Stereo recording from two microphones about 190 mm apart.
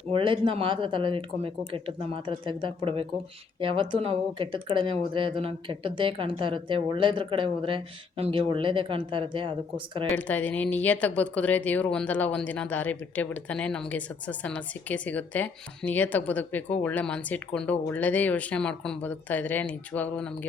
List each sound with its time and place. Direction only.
0.1 s speech: 25° right (ahead or behind)
10.2 s speech: 10° left (ahead or behind)